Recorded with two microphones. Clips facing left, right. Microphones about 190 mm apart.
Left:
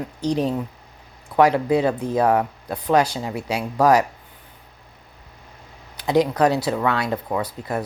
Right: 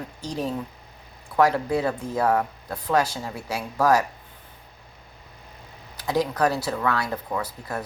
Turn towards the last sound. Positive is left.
turn(degrees=20)  # may be behind; listen again after turning